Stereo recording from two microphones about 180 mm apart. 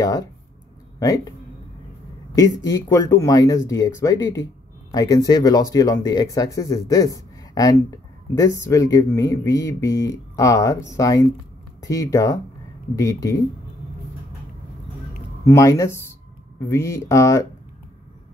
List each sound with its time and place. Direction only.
0.9 s speech: 20° left (ahead or behind)
2.3 s speech: 20° left (ahead or behind)
15.4 s speech: 15° left (ahead or behind)